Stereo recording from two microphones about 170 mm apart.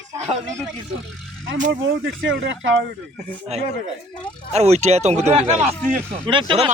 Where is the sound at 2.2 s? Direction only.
90° right.